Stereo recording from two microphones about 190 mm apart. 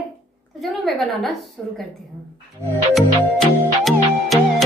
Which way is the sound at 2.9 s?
Centre (ahead or behind).